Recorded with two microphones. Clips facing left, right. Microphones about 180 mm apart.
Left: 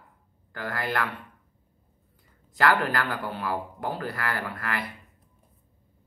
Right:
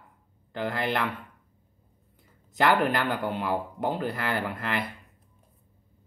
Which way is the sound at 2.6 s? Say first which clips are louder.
Right 1 dB; 20° right (ahead or behind).